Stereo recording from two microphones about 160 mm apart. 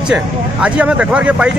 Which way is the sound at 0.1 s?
5° right (ahead or behind).